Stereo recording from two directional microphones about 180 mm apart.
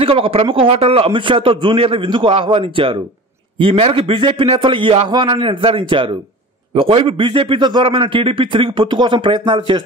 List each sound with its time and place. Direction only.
0.0 s a man's voice: 30° right (ahead or behind)